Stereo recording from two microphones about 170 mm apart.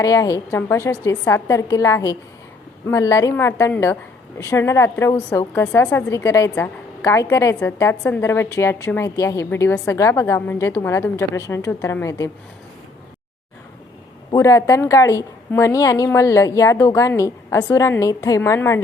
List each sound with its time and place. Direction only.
0.0 s a woman's voice: 20° left (ahead or behind)
14.3 s a woman's voice: 20° left (ahead or behind)